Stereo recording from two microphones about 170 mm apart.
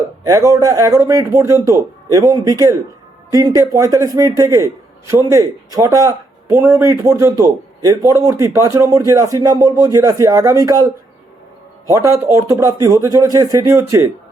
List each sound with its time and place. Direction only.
0.3 s a man's voice: 20° right (ahead or behind)
11.9 s a man's voice: 20° right (ahead or behind)